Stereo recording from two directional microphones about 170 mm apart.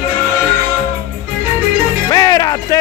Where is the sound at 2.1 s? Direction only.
20° left (ahead or behind).